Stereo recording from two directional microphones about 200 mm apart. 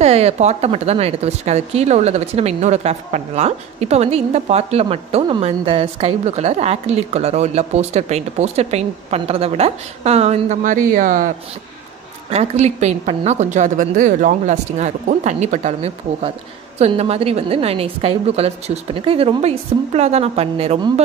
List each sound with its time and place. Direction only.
0.0 s speech: 30° right (ahead or behind)